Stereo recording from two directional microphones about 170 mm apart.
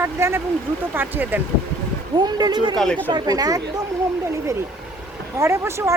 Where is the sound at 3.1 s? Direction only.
25° right (ahead or behind).